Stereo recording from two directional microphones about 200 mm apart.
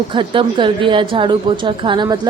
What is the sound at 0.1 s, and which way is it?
A woman's voice, 25° right (ahead or behind).